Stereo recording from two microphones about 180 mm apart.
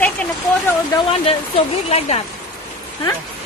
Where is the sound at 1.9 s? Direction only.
35° left (ahead or behind).